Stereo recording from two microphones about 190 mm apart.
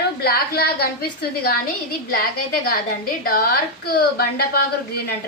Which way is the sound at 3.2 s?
50° left (ahead or behind).